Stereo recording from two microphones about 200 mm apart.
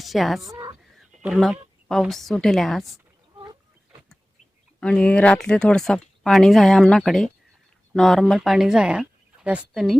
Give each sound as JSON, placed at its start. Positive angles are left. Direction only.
{"t": 0.0, "sound": "speech", "side_deg": 0}
{"t": 0.4, "sound": "a sound", "side_deg": -20}
{"t": 0.9, "sound": "a woman's voice", "side_deg": 0}
{"t": 4.8, "sound": "speech", "side_deg": 5}